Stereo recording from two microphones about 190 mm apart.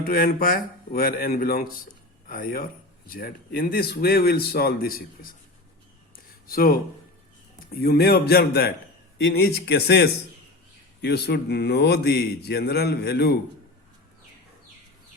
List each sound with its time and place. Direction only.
0.0 s speech: 50° left (ahead or behind)
6.1 s a sound: 50° left (ahead or behind)
7.7 s a man's voice: 55° left (ahead or behind)
9.1 s a man's voice: 70° left (ahead or behind)